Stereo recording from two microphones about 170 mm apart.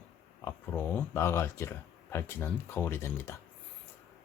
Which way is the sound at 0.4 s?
10° left (ahead or behind).